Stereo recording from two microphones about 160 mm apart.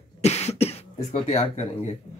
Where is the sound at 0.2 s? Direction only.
40° left (ahead or behind).